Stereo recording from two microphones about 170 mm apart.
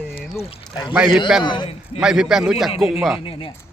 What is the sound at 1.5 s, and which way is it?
Speech, 25° left (ahead or behind).